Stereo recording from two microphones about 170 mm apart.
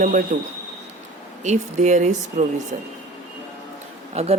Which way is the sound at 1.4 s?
45° right (ahead or behind).